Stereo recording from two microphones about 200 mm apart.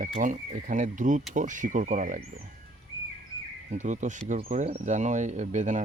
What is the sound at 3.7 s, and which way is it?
Speech, 35° right (ahead or behind).